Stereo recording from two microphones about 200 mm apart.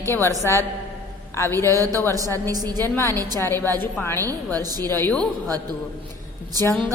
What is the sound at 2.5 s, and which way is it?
Speech, 20° right (ahead or behind).